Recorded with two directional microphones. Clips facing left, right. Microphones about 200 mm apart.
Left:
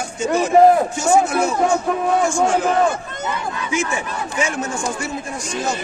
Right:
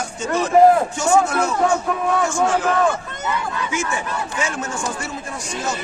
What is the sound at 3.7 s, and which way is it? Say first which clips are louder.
Speech: left 4 dB; 15° left (ahead or behind).